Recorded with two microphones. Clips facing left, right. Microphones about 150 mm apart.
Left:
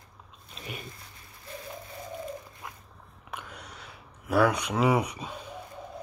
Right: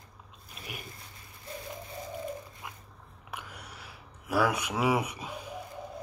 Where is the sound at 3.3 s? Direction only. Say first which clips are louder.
Left 2 dB; 10° right (ahead or behind).